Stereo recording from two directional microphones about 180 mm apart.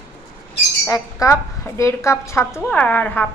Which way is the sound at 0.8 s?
15° left (ahead or behind).